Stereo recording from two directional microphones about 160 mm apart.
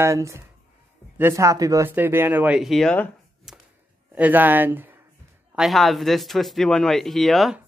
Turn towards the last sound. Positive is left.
turn(degrees=0)  # may be behind; listen again after turning